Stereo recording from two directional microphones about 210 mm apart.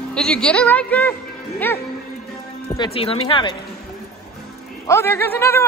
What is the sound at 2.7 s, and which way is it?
Speech, 25° left (ahead or behind).